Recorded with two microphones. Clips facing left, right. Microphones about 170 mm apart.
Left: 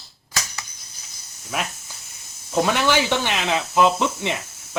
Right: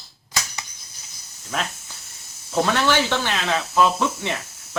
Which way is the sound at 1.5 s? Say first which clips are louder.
Even; 10° left (ahead or behind).